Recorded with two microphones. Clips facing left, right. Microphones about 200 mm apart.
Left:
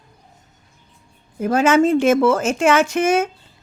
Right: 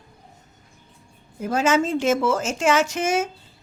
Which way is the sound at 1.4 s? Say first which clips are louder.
Left 6 dB; 60° left (ahead or behind).